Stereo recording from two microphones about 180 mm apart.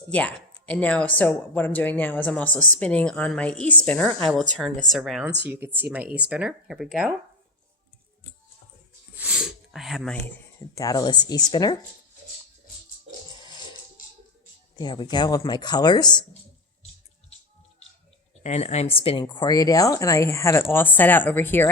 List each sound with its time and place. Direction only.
0.1 s a woman's voice: 5° left (ahead or behind)
9.1 s sneeze: 5° right (ahead or behind)
10.3 s speech: 20° left (ahead or behind)
14.8 s speech: 25° left (ahead or behind)
18.4 s speech: 40° left (ahead or behind); by 21.7 s 10° left (ahead or behind)